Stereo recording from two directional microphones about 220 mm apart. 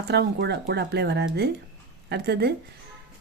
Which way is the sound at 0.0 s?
50° right (ahead or behind).